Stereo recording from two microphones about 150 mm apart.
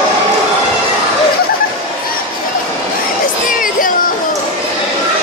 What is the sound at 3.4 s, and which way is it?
Music, 65° left (ahead or behind).